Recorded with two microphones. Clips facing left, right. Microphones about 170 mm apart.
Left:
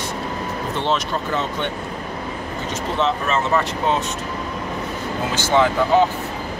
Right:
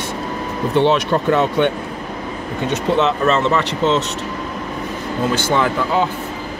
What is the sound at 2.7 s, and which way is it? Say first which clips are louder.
Speech: right 5 dB; 65° right (ahead or behind).